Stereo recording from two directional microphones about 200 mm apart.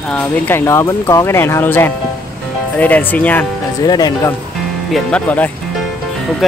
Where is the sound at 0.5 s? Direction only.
15° left (ahead or behind).